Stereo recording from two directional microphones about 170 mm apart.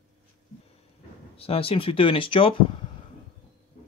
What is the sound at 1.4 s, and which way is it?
Speech, 35° left (ahead or behind).